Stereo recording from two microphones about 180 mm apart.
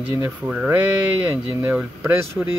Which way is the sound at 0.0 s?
10° right (ahead or behind).